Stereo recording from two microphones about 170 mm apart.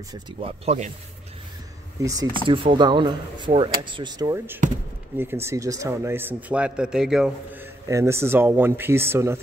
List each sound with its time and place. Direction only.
0.1 s speech: 35° right (ahead or behind)
2.0 s a man's voice: 20° right (ahead or behind); by 7.6 s 5° right (ahead or behind)
7.9 s a man's voice: 15° right (ahead or behind)